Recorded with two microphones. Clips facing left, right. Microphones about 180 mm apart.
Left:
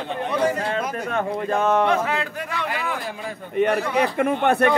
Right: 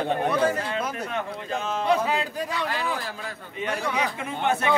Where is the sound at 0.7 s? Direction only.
50° left (ahead or behind).